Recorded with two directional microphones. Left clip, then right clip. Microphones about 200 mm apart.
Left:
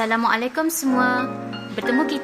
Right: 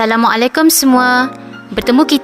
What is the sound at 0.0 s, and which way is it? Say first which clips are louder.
Speech: right 9 dB; 50° right (ahead or behind).